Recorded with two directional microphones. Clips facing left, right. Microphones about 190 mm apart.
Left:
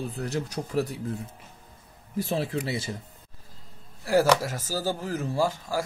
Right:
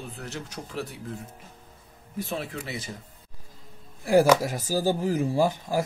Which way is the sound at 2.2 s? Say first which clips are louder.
Left 4 dB; 35° left (ahead or behind).